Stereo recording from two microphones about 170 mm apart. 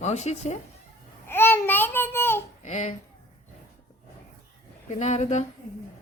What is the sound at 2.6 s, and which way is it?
Speech, 40° left (ahead or behind).